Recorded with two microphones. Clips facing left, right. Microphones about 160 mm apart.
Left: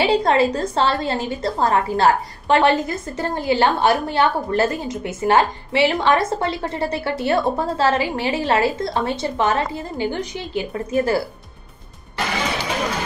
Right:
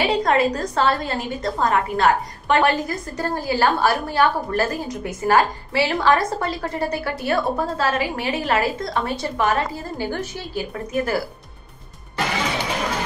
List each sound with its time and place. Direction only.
0.0 s a woman's voice: 30° left (ahead or behind)